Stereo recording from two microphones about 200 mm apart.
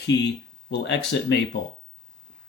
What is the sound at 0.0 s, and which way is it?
Speech, 60° left (ahead or behind).